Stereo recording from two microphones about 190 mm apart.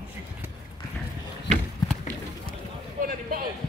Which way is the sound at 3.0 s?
50° right (ahead or behind).